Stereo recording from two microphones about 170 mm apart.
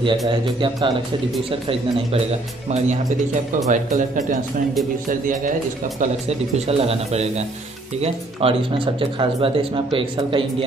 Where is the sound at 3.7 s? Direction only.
50° right (ahead or behind).